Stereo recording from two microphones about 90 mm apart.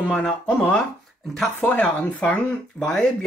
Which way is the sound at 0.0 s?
10° left (ahead or behind).